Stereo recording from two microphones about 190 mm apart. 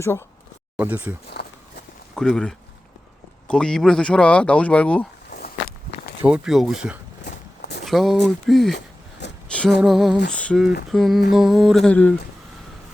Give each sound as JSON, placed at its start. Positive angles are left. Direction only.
{"t": 0.8, "sound": "speech", "side_deg": -10}
{"t": 1.3, "sound": "walk", "side_deg": 55}
{"t": 2.1, "sound": "speech", "side_deg": 5}
{"t": 5.3, "sound": "a sound", "side_deg": 55}
{"t": 6.2, "sound": "speech", "side_deg": -5}
{"t": 7.3, "sound": "walk", "side_deg": 60}
{"t": 7.9, "sound": "speech", "side_deg": 0}
{"t": 9.5, "sound": "a sound", "side_deg": 5}
{"t": 9.8, "sound": "speech", "side_deg": 0}